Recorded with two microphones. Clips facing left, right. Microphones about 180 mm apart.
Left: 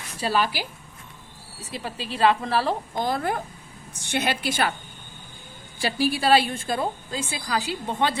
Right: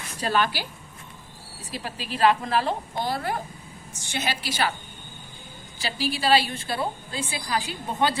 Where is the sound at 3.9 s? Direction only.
60° left (ahead or behind).